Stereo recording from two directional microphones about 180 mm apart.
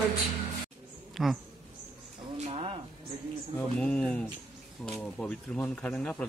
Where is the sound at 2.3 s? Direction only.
35° right (ahead or behind).